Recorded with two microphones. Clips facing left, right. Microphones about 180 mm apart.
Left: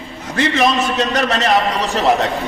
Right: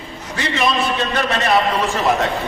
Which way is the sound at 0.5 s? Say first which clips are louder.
Left 1 dB; 45° left (ahead or behind).